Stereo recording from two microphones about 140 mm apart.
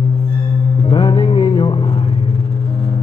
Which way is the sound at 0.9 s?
35° left (ahead or behind).